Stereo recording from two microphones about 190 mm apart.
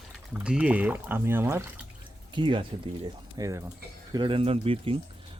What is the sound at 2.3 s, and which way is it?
Speech, 25° right (ahead or behind).